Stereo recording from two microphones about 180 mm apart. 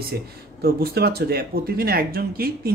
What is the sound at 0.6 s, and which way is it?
A man's voice, 60° right (ahead or behind).